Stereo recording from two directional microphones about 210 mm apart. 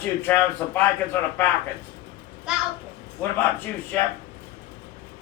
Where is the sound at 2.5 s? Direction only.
5° right (ahead or behind).